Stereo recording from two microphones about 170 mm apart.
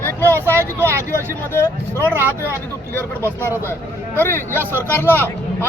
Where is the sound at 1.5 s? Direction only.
15° left (ahead or behind).